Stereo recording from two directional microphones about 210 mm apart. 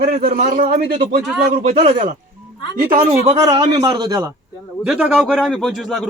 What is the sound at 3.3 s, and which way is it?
Speech, 20° right (ahead or behind).